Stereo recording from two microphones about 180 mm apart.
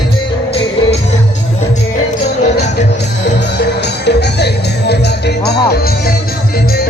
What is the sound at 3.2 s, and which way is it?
Music, 70° left (ahead or behind).